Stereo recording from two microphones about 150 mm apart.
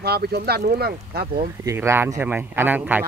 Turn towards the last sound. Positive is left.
turn(degrees=-10)  # may be behind; listen again after turning